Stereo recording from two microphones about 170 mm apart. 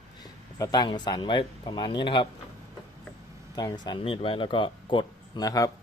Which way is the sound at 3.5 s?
25° left (ahead or behind).